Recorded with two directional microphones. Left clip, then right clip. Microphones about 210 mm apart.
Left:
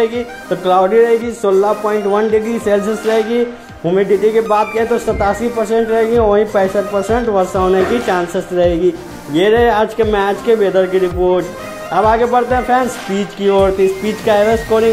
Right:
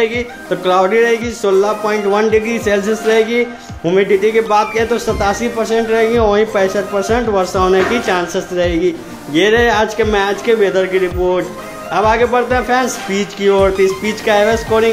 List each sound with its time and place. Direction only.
0.0 s a man's voice: centre (ahead or behind)